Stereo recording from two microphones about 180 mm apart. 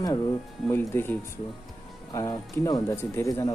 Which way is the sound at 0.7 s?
10° left (ahead or behind).